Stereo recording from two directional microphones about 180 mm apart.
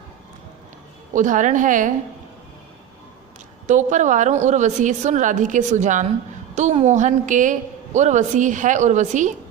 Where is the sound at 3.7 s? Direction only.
45° right (ahead or behind).